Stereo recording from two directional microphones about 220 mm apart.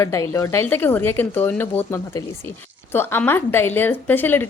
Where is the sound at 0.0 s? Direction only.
15° left (ahead or behind).